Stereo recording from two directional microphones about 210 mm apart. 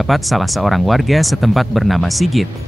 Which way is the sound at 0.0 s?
Centre (ahead or behind).